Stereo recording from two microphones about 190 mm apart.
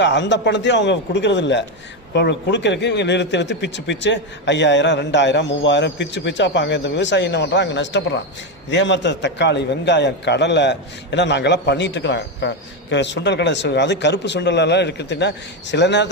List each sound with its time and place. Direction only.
0.0 s a man's voice: 70° left (ahead or behind)